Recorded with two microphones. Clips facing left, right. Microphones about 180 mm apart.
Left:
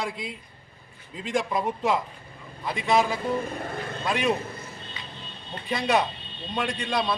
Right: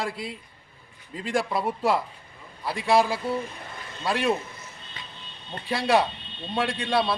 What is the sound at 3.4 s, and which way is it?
Vehicle, 50° left (ahead or behind).